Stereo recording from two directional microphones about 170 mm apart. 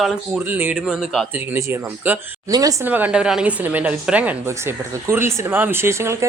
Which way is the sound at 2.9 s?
10° right (ahead or behind).